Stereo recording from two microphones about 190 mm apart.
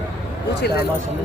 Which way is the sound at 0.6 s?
55° left (ahead or behind).